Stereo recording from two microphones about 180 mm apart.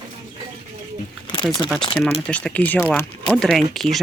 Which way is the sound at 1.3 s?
25° left (ahead or behind).